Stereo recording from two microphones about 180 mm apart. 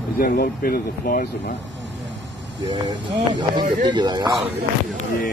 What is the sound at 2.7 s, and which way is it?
Speech, 25° right (ahead or behind).